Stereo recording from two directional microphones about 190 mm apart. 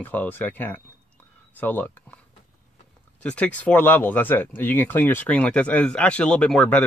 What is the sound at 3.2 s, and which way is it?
Speech, 5° left (ahead or behind).